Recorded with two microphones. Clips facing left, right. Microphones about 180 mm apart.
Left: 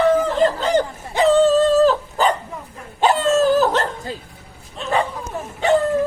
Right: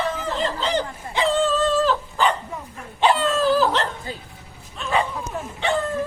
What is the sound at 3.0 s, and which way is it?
Laughter, 45° left (ahead or behind).